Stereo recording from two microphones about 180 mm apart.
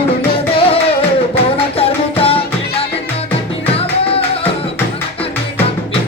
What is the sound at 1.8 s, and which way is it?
Music, 30° left (ahead or behind).